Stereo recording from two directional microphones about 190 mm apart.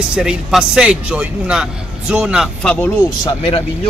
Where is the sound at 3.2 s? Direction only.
30° left (ahead or behind).